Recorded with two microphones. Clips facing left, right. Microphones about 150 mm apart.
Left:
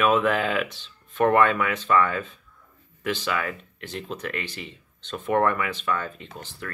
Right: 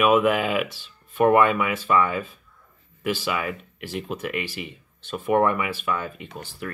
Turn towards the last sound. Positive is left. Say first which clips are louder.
# right 3 dB
turn(degrees=-10)  # may be behind; listen again after turning